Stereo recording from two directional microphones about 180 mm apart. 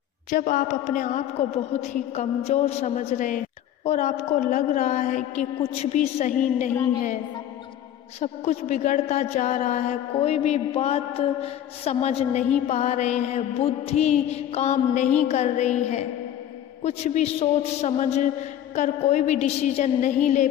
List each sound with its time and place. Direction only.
0.3 s a sound: 45° left (ahead or behind)
1.7 s mantra: 40° left (ahead or behind)
8.2 s mantra: 40° left (ahead or behind)